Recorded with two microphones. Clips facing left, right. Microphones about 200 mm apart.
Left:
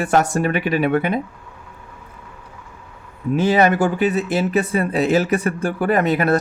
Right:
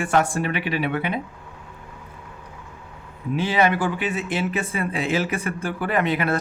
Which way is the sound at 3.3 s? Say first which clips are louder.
Left 5 dB; 45° left (ahead or behind).